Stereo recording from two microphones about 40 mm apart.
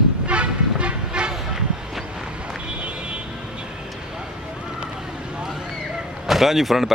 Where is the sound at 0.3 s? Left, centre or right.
Right.